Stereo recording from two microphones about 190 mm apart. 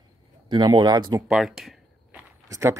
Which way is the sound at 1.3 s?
Centre (ahead or behind).